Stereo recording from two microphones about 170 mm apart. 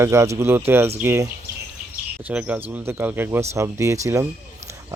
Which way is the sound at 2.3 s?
10° right (ahead or behind).